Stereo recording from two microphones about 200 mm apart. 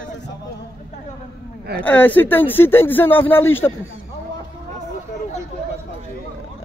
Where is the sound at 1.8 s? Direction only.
10° left (ahead or behind).